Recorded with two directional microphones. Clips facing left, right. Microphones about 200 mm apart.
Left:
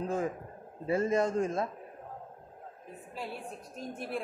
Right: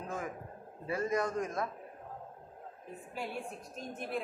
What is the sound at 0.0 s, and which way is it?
A man's voice, 30° left (ahead or behind).